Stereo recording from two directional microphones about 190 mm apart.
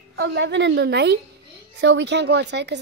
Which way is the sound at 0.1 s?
65° right (ahead or behind).